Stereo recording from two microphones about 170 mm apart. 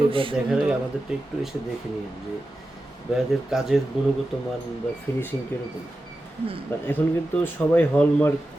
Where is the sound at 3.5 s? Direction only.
Centre (ahead or behind).